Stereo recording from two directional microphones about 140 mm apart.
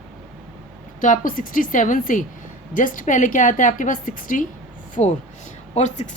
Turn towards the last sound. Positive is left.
turn(degrees=55)  # may be behind; listen again after turning